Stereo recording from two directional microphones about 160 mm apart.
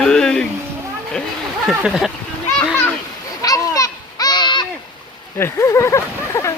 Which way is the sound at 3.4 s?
20° left (ahead or behind).